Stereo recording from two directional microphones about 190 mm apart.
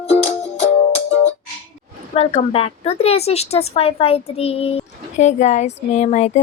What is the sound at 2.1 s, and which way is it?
Speech, 35° left (ahead or behind).